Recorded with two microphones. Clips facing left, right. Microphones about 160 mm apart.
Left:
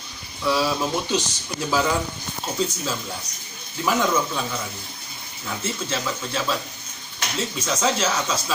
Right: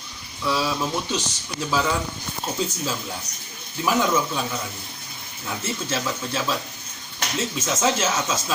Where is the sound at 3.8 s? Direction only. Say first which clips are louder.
Even; 5° right (ahead or behind).